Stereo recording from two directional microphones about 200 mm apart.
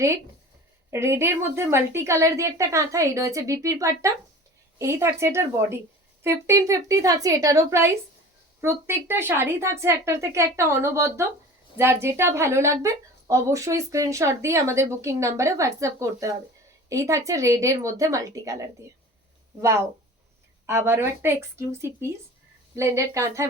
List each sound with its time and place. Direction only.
0.9 s a woman's voice: 15° right (ahead or behind)
20.7 s a woman's voice: 10° right (ahead or behind)